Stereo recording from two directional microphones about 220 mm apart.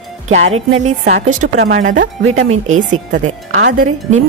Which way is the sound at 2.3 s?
70° right (ahead or behind).